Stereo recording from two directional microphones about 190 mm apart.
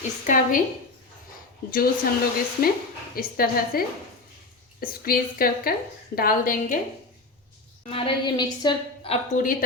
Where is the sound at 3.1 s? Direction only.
50° left (ahead or behind).